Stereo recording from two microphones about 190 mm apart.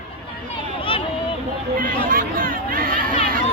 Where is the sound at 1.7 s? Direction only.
50° right (ahead or behind).